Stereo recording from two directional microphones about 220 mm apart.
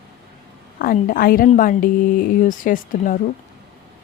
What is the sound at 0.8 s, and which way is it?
A woman's voice, 40° left (ahead or behind).